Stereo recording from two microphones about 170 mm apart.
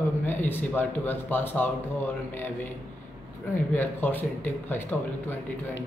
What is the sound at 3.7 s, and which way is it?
A man's voice, 10° left (ahead or behind).